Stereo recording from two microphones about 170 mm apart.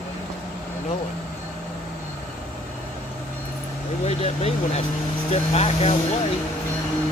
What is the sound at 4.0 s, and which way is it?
Speech, 35° left (ahead or behind).